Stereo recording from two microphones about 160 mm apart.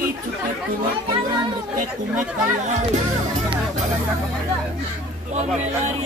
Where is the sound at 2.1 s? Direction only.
50° right (ahead or behind).